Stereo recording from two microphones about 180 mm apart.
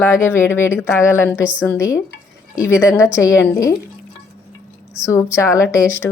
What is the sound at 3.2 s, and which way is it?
Speech, 15° left (ahead or behind).